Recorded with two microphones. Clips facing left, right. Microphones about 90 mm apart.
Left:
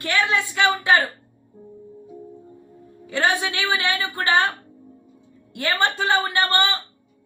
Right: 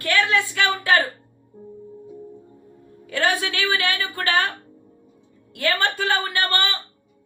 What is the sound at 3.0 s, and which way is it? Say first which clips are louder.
Speech: left 1 dB; 25° left (ahead or behind).